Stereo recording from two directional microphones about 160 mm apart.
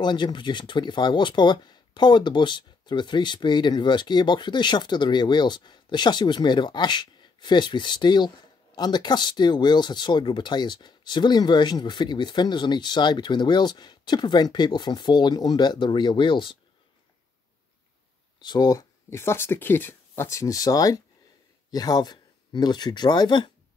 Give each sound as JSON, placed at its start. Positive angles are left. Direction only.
{"t": 0.0, "sound": "speech", "side_deg": 30}
{"t": 18.4, "sound": "speech", "side_deg": 25}